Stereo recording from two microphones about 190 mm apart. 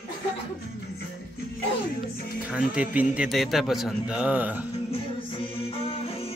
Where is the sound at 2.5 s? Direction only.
5° right (ahead or behind).